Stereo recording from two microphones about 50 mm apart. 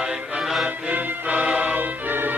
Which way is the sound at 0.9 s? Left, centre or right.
Right.